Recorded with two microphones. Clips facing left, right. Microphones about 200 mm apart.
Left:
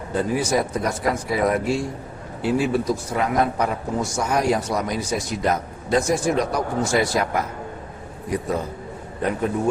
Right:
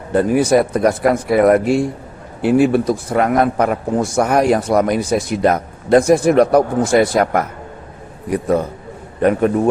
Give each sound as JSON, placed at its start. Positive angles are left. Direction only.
{"t": 0.1, "sound": "a man's voice", "side_deg": -60}